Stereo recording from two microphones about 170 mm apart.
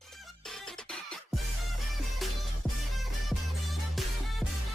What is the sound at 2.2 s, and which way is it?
Music, centre (ahead or behind).